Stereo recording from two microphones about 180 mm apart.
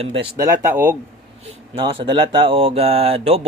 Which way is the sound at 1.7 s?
30° right (ahead or behind).